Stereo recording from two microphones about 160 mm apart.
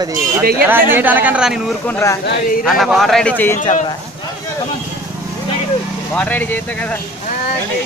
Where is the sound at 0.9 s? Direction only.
10° right (ahead or behind).